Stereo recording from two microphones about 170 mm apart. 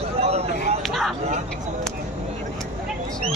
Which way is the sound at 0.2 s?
40° right (ahead or behind).